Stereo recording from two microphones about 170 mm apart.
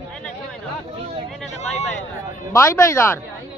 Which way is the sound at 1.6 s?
45° left (ahead or behind).